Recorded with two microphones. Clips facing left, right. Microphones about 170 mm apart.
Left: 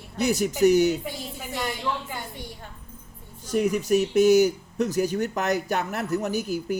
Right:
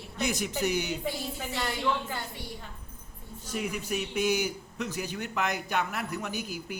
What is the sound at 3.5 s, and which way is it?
Speech, 45° left (ahead or behind).